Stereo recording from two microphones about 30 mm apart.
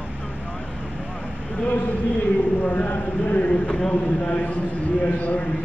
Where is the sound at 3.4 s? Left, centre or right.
Left.